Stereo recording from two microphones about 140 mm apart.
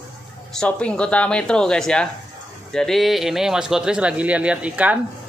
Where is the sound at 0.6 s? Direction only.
5° left (ahead or behind); by 5.0 s 10° right (ahead or behind).